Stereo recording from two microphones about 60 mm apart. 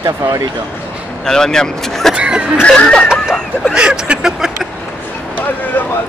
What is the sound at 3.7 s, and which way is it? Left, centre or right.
Vehicle, centre.